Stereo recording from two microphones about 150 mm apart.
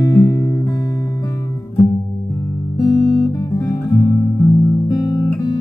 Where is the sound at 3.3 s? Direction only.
25° left (ahead or behind).